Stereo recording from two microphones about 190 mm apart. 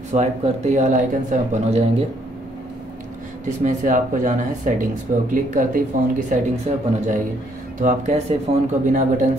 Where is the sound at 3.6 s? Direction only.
40° right (ahead or behind).